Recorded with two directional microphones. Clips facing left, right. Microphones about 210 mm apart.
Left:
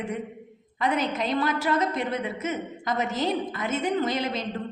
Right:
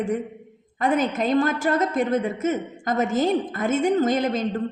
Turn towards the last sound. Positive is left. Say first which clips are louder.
# right 6 dB
turn(degrees=-45)  # may be behind; listen again after turning